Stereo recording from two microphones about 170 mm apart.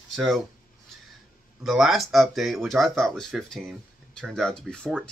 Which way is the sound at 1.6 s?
Centre (ahead or behind).